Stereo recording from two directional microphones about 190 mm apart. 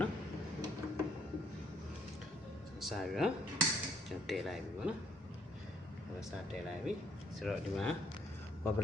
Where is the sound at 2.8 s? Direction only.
Centre (ahead or behind).